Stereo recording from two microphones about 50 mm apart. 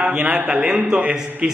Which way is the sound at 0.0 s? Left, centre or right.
Right.